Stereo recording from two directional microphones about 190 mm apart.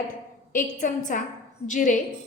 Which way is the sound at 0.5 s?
45° left (ahead or behind).